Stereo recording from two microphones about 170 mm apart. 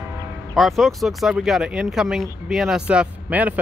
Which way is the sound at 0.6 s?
Centre (ahead or behind).